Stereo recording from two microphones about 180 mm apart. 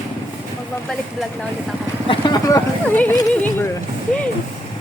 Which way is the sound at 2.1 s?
25° left (ahead or behind).